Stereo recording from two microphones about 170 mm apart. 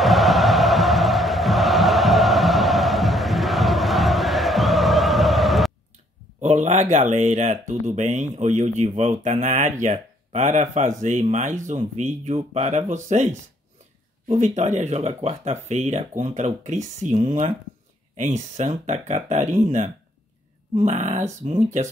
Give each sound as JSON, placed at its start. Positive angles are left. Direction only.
{"t": 0.0, "sound": "chant", "side_deg": 0}
{"t": 6.4, "sound": "speech", "side_deg": -45}